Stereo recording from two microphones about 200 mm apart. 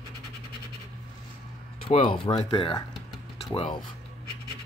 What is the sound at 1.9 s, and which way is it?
Speech, 30° left (ahead or behind).